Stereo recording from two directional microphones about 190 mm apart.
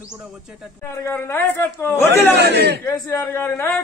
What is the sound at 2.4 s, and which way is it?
Speech, 60° right (ahead or behind).